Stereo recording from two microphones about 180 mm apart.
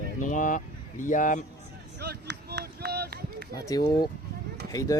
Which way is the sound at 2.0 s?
65° right (ahead or behind).